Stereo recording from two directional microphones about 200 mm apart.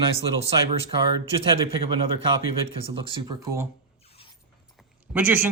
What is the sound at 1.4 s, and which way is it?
Speech, 25° right (ahead or behind).